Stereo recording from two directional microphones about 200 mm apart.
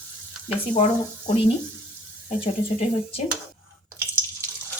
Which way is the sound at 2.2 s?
30° left (ahead or behind).